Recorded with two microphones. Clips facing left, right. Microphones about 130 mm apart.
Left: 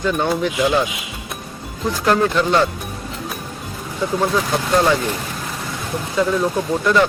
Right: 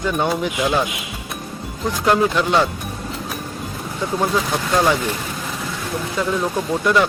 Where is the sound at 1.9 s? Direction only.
15° right (ahead or behind).